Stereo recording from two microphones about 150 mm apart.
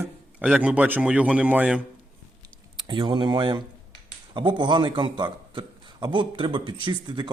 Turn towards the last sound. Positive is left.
turn(degrees=-30)  # may be behind; listen again after turning